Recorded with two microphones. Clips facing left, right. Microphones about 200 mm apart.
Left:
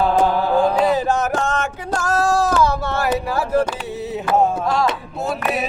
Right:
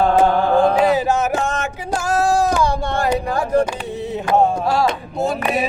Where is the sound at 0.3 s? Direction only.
5° left (ahead or behind).